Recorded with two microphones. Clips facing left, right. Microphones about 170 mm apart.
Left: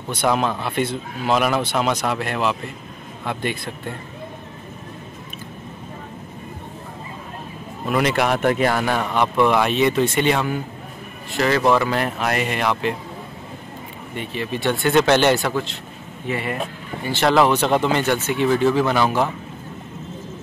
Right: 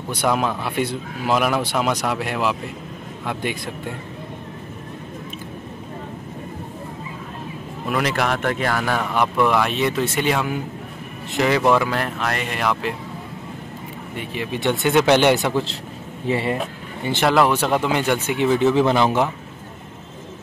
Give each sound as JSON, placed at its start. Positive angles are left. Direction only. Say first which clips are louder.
{"t": 0.1, "sound": "a man's voice", "louder": "left 1 dB", "side_deg": -5}
{"t": 7.9, "sound": "speech", "louder": "left 2 dB", "side_deg": 0}
{"t": 9.1, "sound": "a man's voice", "louder": "left 1 dB", "side_deg": -5}
{"t": 11.7, "sound": "speech", "louder": "even", "side_deg": 0}
{"t": 14.1, "sound": "a man's voice", "louder": "left 1 dB", "side_deg": -10}
{"t": 16.3, "sound": "speech", "louder": "right 4 dB", "side_deg": -30}
{"t": 17.2, "sound": "a man's voice", "louder": "left 1 dB", "side_deg": 0}